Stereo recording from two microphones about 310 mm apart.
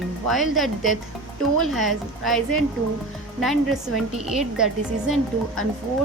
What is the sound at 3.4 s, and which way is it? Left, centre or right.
Speech, centre.